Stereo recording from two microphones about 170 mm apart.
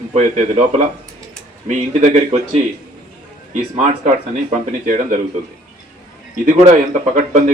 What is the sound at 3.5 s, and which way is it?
A man's voice, 40° right (ahead or behind).